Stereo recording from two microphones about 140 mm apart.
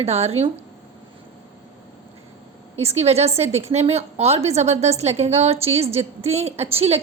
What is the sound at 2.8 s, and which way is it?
A woman's voice, 50° right (ahead or behind).